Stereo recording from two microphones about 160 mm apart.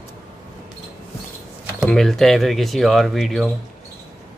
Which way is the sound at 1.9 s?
5° left (ahead or behind).